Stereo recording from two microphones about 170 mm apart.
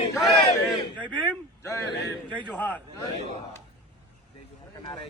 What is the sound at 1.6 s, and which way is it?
A man's voice, 15° left (ahead or behind).